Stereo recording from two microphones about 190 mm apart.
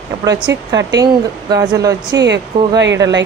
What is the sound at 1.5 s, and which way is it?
A woman's voice, 20° right (ahead or behind).